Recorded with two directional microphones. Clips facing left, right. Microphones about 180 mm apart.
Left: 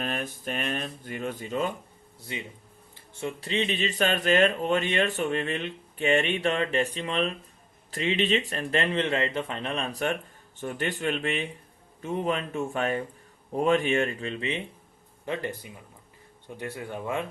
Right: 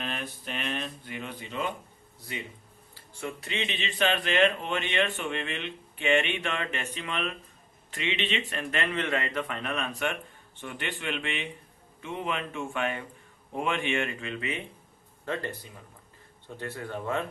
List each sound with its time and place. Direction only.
0.0 s speech: 45° left (ahead or behind)
2.9 s speech: 25° left (ahead or behind)
15.2 s speech: 15° left (ahead or behind)